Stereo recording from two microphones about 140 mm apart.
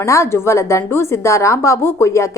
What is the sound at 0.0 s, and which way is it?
A woman's voice, 20° left (ahead or behind).